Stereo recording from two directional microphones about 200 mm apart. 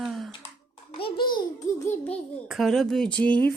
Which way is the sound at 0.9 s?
25° left (ahead or behind).